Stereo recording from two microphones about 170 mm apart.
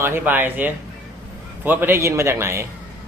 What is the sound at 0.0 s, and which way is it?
Speech, 10° right (ahead or behind).